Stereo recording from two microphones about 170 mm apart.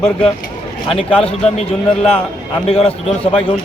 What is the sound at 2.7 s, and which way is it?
Speech, 35° left (ahead or behind).